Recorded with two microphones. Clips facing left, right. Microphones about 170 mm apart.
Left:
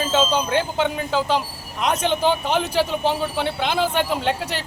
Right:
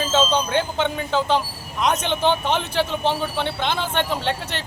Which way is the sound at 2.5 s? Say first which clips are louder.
Left 2 dB; 5° left (ahead or behind).